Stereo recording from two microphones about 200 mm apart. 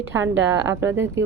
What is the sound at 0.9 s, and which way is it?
Speech, 15° right (ahead or behind).